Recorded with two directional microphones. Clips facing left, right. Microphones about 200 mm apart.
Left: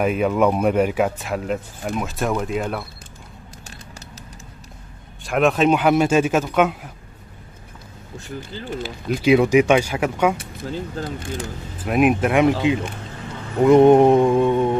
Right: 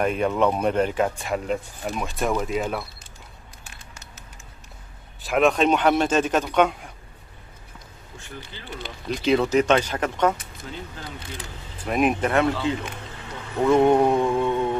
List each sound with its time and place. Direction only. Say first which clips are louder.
0.0 s speech: left 3 dB; 5° left (ahead or behind)
3.6 s a sound: left 6 dB; 40° left (ahead or behind)
5.2 s speech: left 2 dB; centre (ahead or behind)
8.2 s speech: left 8 dB; 40° left (ahead or behind)
8.8 s speech: left 5 dB; 10° left (ahead or behind)
10.6 s speech: left 9 dB; 40° left (ahead or behind)
11.8 s speech: left 4 dB; 5° left (ahead or behind)
13.7 s mantra: left 6 dB; 20° left (ahead or behind)